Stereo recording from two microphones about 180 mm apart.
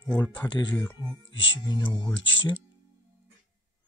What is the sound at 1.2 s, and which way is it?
Speech, 90° left.